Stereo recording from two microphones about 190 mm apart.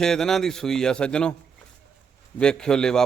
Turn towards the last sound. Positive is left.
turn(degrees=5)  # may be behind; listen again after turning